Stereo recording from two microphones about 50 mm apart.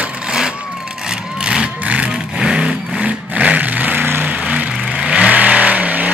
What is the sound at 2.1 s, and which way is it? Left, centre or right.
Vehicle, centre.